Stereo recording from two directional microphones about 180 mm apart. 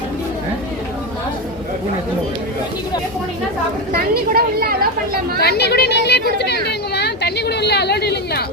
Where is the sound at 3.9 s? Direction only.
55° right (ahead or behind).